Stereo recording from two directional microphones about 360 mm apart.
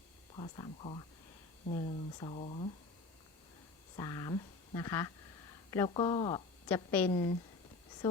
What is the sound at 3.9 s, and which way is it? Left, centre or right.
A woman's voice, centre.